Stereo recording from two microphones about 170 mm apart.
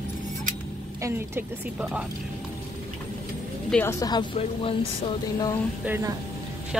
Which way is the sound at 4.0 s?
25° left (ahead or behind).